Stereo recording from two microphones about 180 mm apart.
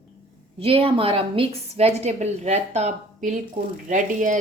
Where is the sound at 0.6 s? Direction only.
30° right (ahead or behind).